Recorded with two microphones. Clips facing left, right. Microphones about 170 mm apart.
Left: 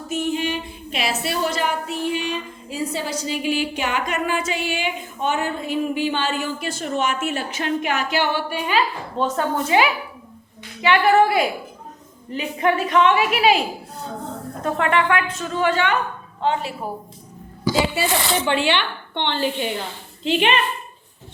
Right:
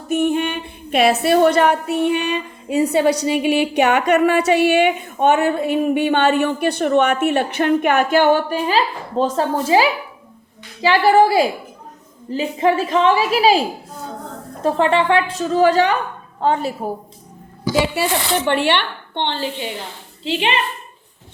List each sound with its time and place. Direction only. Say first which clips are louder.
0.1 s a woman's voice: right 5 dB; 55° right (ahead or behind)
17.9 s a woman's voice: right 2 dB; 60° right (ahead or behind)